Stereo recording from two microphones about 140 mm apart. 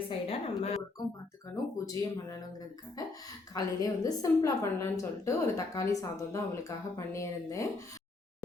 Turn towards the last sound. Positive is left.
turn(degrees=20)  # may be behind; listen again after turning